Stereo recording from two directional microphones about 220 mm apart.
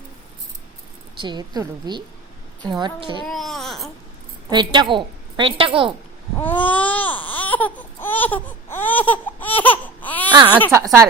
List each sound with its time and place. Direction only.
1.2 s a woman's voice: 20° right (ahead or behind)
3.2 s babbling: centre (ahead or behind)
4.4 s a woman's voice: 20° right (ahead or behind)
6.4 s baby cry: 5° left (ahead or behind)
10.3 s a woman's voice: 20° right (ahead or behind)